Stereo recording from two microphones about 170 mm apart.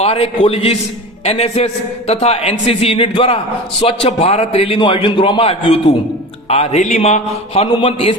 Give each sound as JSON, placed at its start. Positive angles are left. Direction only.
{"t": 0.0, "sound": "a man's voice", "side_deg": 35}